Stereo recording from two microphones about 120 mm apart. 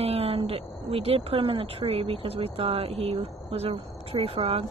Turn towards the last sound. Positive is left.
turn(degrees=-55)  # may be behind; listen again after turning